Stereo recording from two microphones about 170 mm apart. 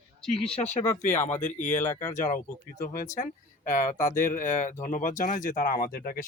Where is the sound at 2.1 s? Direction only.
50° left (ahead or behind).